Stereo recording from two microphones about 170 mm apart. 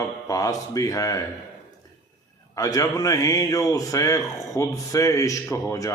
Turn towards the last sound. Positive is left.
turn(degrees=20)  # may be behind; listen again after turning